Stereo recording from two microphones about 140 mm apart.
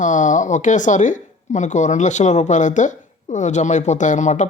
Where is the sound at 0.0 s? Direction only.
65° left (ahead or behind).